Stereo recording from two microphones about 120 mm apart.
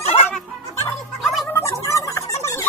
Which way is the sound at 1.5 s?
25° left (ahead or behind).